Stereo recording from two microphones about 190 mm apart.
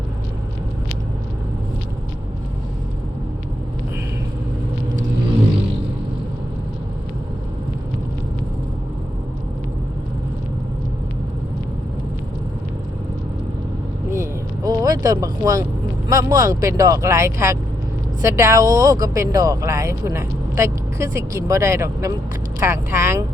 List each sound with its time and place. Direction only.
14.1 s vehicle: 15° right (ahead or behind)
16.0 s speech: 15° right (ahead or behind)